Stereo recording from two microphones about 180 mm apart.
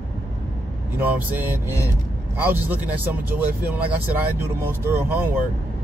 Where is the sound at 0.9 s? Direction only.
10° right (ahead or behind).